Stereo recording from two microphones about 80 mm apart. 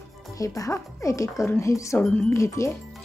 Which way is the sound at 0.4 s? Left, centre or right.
Left.